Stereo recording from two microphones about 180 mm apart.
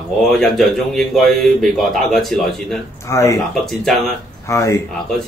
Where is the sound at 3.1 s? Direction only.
15° left (ahead or behind).